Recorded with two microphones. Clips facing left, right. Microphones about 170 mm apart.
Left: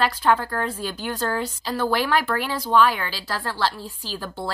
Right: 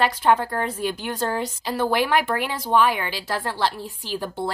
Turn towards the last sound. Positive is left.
turn(degrees=-20)  # may be behind; listen again after turning